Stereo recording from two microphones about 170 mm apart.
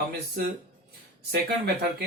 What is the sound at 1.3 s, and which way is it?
Speech, 65° right (ahead or behind).